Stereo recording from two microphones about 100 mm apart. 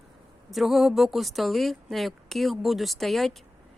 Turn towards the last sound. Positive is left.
turn(degrees=0)  # may be behind; listen again after turning